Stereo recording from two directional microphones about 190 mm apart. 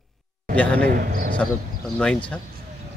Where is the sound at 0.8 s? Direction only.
50° right (ahead or behind).